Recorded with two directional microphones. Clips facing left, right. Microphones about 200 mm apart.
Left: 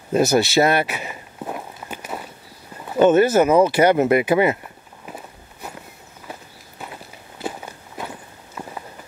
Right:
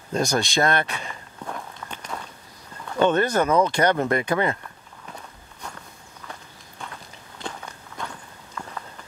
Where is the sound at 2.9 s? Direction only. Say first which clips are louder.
Left 6 dB; 10° left (ahead or behind).